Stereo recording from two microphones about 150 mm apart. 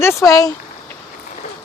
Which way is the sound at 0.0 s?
20° left (ahead or behind).